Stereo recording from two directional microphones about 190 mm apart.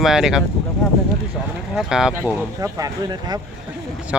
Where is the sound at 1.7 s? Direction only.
5° right (ahead or behind).